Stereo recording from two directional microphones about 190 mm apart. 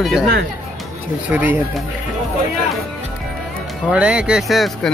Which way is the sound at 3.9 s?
5° right (ahead or behind).